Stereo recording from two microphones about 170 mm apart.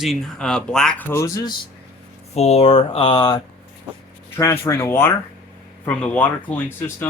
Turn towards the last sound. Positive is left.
turn(degrees=10)  # may be behind; listen again after turning